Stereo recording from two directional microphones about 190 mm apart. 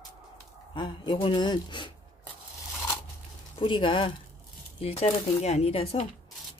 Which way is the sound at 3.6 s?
25° left (ahead or behind).